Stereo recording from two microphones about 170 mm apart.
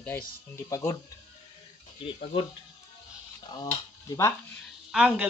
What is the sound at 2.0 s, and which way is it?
Speech, 35° left (ahead or behind).